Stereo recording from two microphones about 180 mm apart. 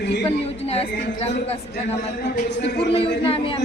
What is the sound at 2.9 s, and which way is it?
Speech, 30° left (ahead or behind).